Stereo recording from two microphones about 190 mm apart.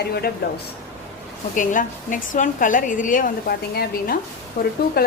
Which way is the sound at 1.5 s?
45° left (ahead or behind).